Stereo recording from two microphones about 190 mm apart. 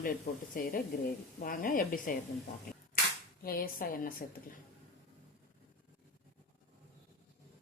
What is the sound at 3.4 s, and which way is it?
Speech, 50° left (ahead or behind).